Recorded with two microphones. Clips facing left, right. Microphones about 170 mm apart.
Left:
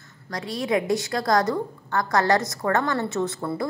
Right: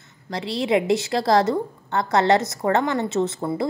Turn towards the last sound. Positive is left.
turn(degrees=-20)  # may be behind; listen again after turning